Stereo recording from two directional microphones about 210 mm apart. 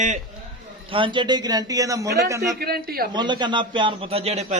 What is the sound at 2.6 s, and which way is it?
Speech, 45° right (ahead or behind).